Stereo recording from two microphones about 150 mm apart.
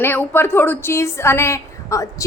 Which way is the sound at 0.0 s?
15° left (ahead or behind).